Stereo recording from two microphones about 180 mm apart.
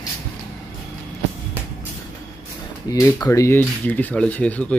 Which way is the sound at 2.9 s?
20° left (ahead or behind).